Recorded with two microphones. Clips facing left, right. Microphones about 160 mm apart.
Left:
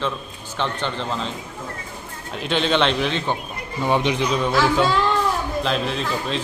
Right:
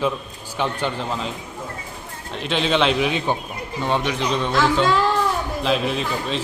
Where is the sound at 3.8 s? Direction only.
15° left (ahead or behind).